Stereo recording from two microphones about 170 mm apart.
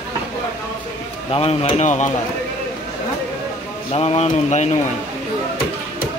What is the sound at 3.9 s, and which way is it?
Dishes, 35° left (ahead or behind).